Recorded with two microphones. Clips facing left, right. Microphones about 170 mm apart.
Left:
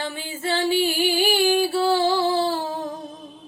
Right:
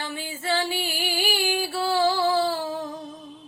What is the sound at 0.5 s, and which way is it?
Music, 25° left (ahead or behind).